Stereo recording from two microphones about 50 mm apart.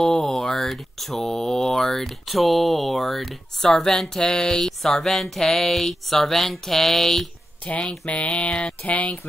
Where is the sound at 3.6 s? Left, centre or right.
Centre.